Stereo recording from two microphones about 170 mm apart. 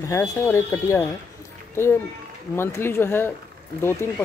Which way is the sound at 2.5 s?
15° left (ahead or behind).